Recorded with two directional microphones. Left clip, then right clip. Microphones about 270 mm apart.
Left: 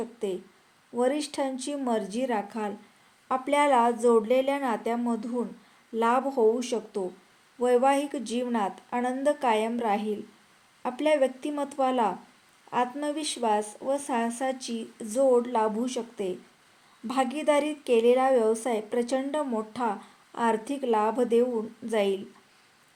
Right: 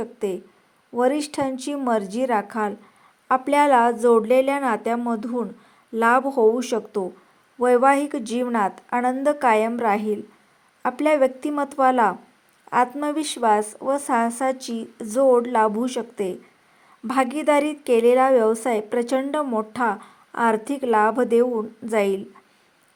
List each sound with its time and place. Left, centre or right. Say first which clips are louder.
0.0 s a woman's voice: right 5 dB; centre